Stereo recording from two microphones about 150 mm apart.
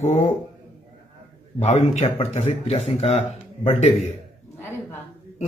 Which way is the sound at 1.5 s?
50° left (ahead or behind).